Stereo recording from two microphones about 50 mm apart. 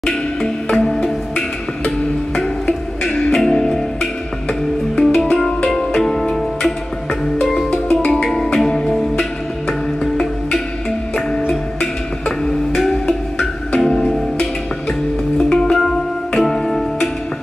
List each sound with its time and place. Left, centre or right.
0.0 s music: centre
2.6 s music: left
4.9 s music: centre
7.9 s music: centre
12.3 s music: centre
15.3 s music: centre